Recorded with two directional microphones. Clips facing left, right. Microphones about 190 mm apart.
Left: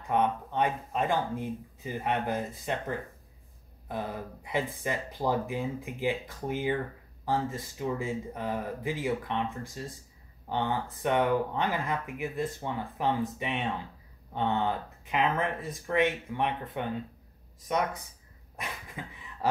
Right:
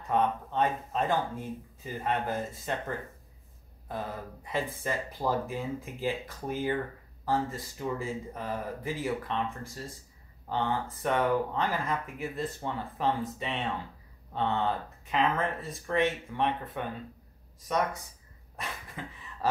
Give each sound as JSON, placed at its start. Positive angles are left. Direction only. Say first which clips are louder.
{"t": 0.1, "sound": "speech", "louder": "even", "side_deg": 15}
{"t": 18.6, "sound": "dog", "louder": "even", "side_deg": 15}